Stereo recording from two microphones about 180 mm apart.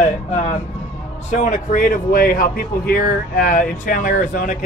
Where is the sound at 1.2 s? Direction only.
40° left (ahead or behind).